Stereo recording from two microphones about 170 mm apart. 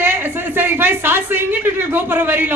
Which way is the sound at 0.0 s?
10° right (ahead or behind).